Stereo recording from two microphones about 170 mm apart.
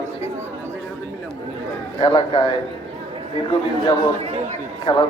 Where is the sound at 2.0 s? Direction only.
25° left (ahead or behind).